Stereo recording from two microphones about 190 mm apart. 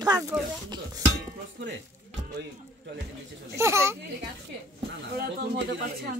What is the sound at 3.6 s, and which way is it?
Speech, 15° right (ahead or behind).